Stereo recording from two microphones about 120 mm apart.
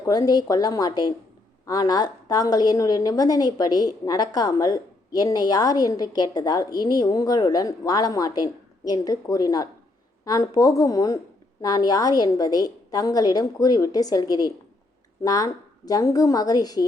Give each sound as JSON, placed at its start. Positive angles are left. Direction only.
{"t": 0.0, "sound": "a woman's voice", "side_deg": 30}